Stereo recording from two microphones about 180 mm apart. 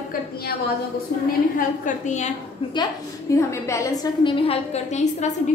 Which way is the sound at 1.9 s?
40° left (ahead or behind).